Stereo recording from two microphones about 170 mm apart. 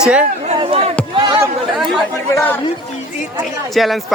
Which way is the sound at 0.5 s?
35° right (ahead or behind).